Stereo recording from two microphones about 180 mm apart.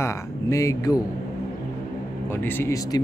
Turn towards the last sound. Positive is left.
turn(degrees=15)  # may be behind; listen again after turning